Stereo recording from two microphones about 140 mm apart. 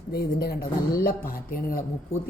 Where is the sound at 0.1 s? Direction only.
90° left.